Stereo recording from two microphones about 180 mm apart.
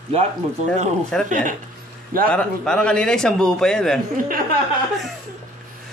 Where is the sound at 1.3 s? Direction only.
45° right (ahead or behind).